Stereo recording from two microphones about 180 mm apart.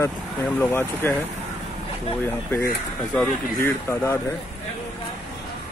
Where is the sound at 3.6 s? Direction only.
15° left (ahead or behind).